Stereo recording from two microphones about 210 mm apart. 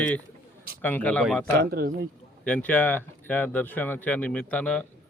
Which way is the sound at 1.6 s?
45° right (ahead or behind).